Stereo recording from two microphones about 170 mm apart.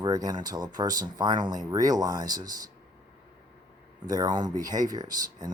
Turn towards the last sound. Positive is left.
turn(degrees=-20)  # may be behind; listen again after turning